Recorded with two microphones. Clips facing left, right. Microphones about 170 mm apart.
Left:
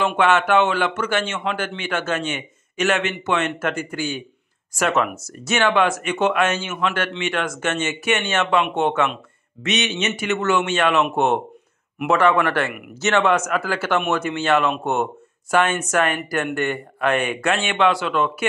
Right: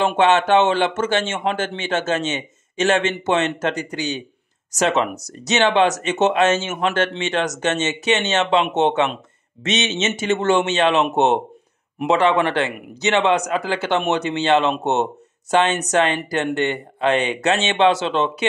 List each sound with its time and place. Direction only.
0.2 s speech: 25° right (ahead or behind)